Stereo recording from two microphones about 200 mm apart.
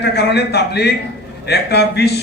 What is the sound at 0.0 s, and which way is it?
A man's voice, 55° left (ahead or behind).